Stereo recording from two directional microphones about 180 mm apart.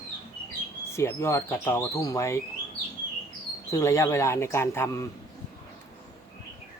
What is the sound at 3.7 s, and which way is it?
A man's voice, 15° left (ahead or behind).